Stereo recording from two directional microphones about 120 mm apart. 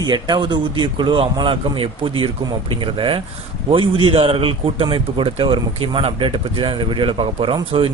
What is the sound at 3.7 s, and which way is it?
Speech, 50° right (ahead or behind).